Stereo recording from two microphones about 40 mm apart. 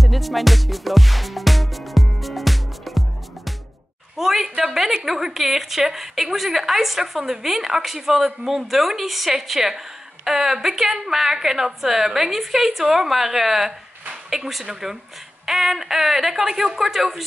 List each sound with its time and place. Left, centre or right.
0.0 s music: centre
4.2 s a woman's voice: centre